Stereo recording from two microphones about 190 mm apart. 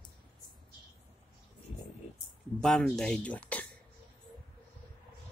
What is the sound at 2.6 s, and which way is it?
Speech, 5° left (ahead or behind).